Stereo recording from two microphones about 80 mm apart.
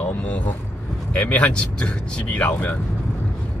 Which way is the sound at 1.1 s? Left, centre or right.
Centre.